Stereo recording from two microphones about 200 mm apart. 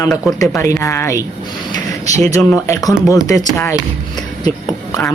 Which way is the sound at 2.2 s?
10° left (ahead or behind).